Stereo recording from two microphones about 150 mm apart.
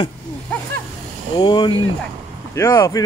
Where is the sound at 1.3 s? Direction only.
30° left (ahead or behind).